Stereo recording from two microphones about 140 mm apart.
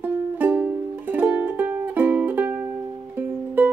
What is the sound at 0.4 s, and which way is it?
Music, 10° right (ahead or behind).